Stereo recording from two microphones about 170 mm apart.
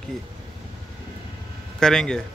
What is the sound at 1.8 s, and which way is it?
Speech, 5° left (ahead or behind).